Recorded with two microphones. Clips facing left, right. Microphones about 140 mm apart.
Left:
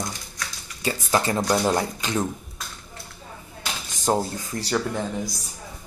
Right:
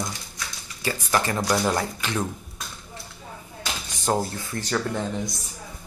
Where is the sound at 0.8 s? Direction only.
20° left (ahead or behind).